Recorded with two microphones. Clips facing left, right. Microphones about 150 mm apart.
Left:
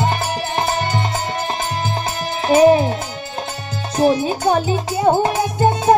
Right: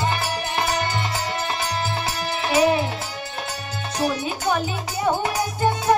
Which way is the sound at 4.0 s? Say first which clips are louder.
Left 9 dB; 40° left (ahead or behind).